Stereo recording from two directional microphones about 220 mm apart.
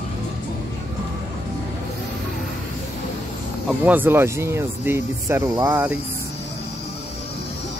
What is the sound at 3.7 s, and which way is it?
Speech, 5° right (ahead or behind).